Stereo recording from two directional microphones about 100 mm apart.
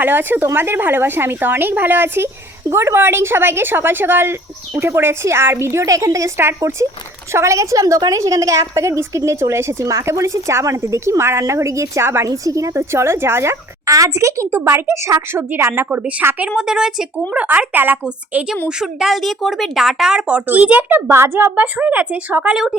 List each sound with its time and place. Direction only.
0.0 s a woman's voice: 20° right (ahead or behind)